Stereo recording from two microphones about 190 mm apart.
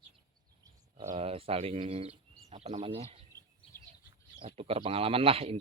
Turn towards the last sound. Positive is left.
turn(degrees=-30)  # may be behind; listen again after turning